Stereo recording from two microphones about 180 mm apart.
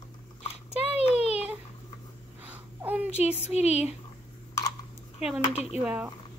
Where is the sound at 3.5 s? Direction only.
35° left (ahead or behind).